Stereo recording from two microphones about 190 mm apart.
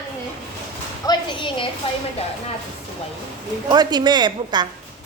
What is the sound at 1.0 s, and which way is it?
Speech, 25° left (ahead or behind).